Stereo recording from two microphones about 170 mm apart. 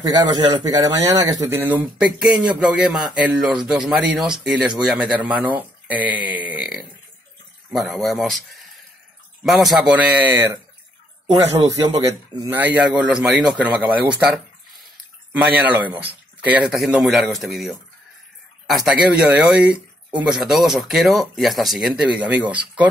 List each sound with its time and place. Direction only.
0.0 s a man's voice: 20° right (ahead or behind)
11.2 s a man's voice: 25° right (ahead or behind)
12.5 s a man's voice: 10° right (ahead or behind)
18.9 s speech: 5° right (ahead or behind)